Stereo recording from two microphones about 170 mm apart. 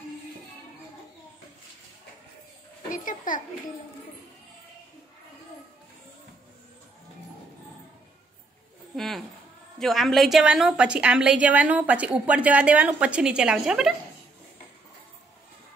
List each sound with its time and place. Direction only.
2.9 s a child's voice: 50° left (ahead or behind)
8.9 s a sound: centre (ahead or behind)
9.8 s a woman's voice: centre (ahead or behind)